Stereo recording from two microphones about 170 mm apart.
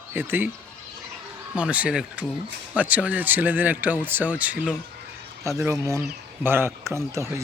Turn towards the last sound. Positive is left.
turn(degrees=-15)  # may be behind; listen again after turning